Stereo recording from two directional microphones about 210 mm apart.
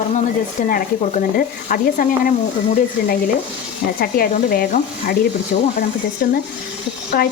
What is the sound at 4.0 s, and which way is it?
Speech, 45° left (ahead or behind).